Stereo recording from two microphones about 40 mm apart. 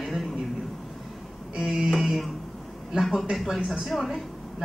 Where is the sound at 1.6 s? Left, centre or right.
Centre.